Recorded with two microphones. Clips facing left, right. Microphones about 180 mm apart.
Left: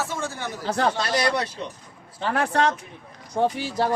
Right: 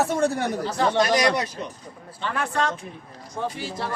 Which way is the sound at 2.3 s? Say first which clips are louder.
Left 4 dB; 70° left (ahead or behind).